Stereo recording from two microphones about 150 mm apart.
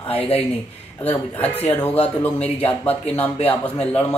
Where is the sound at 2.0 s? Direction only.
40° left (ahead or behind).